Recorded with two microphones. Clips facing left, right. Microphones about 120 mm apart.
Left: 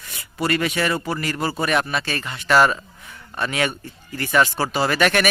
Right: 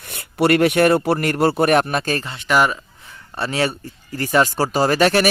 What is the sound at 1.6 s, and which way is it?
Speech, 50° right (ahead or behind).